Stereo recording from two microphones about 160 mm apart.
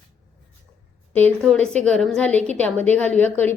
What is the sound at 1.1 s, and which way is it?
A woman's voice, 10° left (ahead or behind).